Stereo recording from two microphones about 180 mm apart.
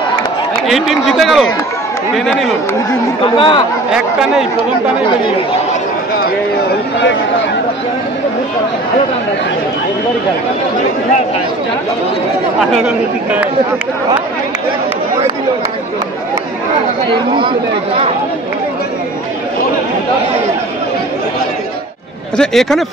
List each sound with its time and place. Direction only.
0.7 s speech: centre (ahead or behind)
3.3 s speech: 30° left (ahead or behind)
3.9 s speech: 5° right (ahead or behind)
12.7 s speech: 5° right (ahead or behind)
17.1 s speech: 30° right (ahead or behind)
22.4 s speech: centre (ahead or behind)